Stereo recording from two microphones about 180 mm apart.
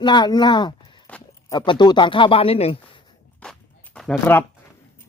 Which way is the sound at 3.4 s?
5° left (ahead or behind).